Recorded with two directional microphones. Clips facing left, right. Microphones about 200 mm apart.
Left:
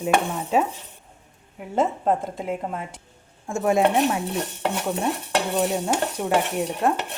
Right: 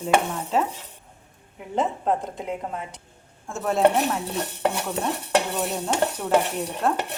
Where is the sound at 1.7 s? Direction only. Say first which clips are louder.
Left 2 dB; centre (ahead or behind).